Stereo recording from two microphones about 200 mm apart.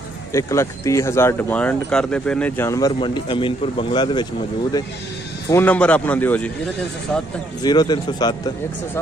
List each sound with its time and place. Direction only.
0.3 s speech: 15° left (ahead or behind)
5.5 s speech: 10° left (ahead or behind)
7.6 s a man's voice: 20° left (ahead or behind)